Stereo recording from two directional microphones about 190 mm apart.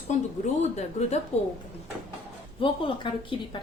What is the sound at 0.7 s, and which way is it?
Speech, 35° left (ahead or behind).